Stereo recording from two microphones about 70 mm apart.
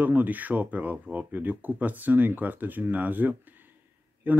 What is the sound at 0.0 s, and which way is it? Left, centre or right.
Speech, right.